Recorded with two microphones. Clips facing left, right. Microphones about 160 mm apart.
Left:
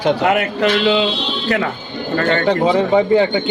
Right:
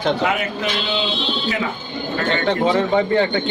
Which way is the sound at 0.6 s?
70° left (ahead or behind).